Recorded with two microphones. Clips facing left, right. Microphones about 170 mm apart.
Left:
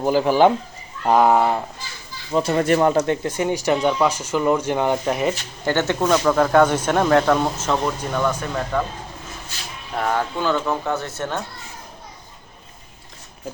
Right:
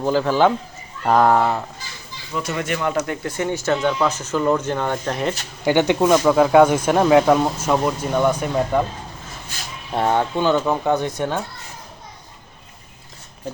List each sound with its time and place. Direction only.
0.0 s speech: 15° left (ahead or behind)
2.3 s speech: 30° left (ahead or behind)
3.2 s speech: 15° left (ahead or behind)
5.6 s speech: 15° right (ahead or behind)
9.9 s speech: 25° right (ahead or behind)